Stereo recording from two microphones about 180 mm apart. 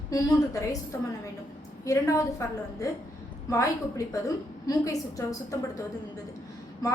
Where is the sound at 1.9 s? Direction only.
15° left (ahead or behind).